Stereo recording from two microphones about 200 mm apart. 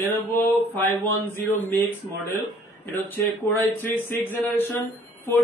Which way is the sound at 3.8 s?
10° left (ahead or behind).